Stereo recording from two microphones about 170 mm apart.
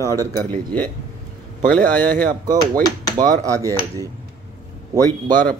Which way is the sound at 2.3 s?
50° right (ahead or behind).